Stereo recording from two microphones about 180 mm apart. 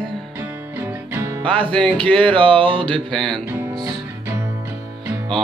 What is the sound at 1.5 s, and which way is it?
Speech, 30° right (ahead or behind).